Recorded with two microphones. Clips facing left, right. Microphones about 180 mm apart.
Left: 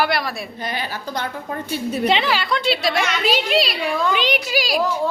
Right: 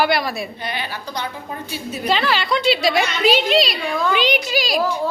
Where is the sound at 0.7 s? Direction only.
45° left (ahead or behind).